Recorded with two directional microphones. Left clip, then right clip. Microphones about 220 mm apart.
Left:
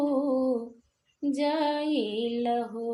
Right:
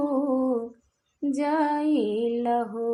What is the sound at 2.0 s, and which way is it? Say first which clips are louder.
Mantra: right 3 dB; 20° right (ahead or behind).